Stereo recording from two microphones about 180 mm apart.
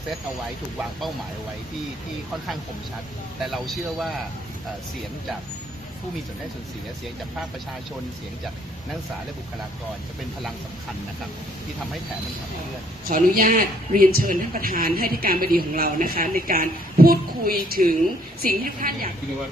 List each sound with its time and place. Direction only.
3.4 s a man's voice: centre (ahead or behind)
13.1 s speech: 50° right (ahead or behind)